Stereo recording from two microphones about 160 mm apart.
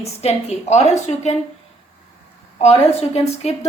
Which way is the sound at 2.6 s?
40° left (ahead or behind).